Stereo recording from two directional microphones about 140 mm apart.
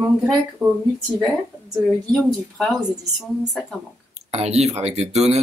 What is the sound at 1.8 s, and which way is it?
A woman's voice, centre (ahead or behind).